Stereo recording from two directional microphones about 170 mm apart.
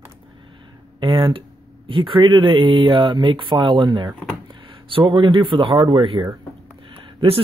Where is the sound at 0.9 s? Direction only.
30° right (ahead or behind).